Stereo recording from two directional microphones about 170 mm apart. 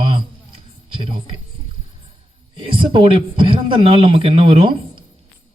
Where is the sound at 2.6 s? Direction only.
30° right (ahead or behind).